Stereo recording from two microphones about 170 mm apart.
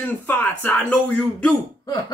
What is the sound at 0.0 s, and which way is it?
Speech, 10° left (ahead or behind).